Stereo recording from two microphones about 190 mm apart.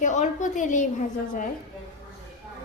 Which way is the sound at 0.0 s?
40° left (ahead or behind).